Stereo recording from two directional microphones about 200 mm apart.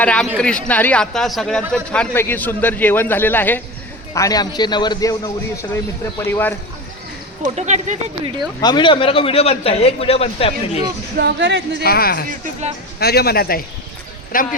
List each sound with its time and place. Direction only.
0.0 s a man's voice: 5° left (ahead or behind)
7.4 s speech: 35° right (ahead or behind)
8.6 s a man's voice: 25° left (ahead or behind)
11.2 s speech: 60° right (ahead or behind)
11.8 s speech: 50° left (ahead or behind)
12.3 s speech: 35° right (ahead or behind)
13.0 s speech: 55° left (ahead or behind)